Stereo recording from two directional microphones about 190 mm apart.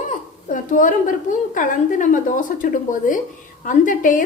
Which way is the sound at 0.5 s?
45° left (ahead or behind).